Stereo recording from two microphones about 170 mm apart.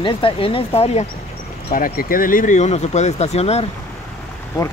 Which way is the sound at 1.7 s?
55° left (ahead or behind).